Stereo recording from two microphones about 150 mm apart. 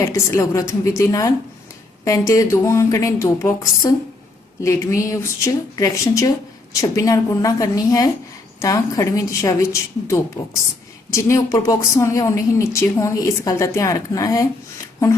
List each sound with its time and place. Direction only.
0.0 s speech: 20° left (ahead or behind)
11.1 s speech: 20° left (ahead or behind)